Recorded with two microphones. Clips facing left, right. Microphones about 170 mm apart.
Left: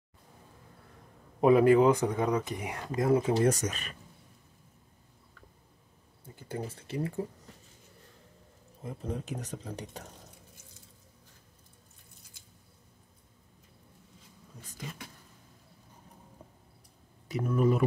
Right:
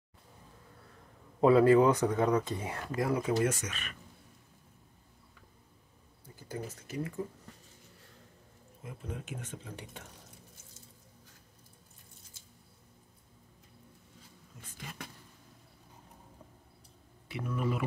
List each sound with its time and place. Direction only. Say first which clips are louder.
1.4 s speech: left 1 dB; 20° left (ahead or behind); by 4.0 s 35° left (ahead or behind)
6.2 s speech: left 3 dB; 25° left (ahead or behind)
8.8 s speech: left 6 dB; 35° left (ahead or behind)
17.3 s speech: left 7 dB; 40° left (ahead or behind)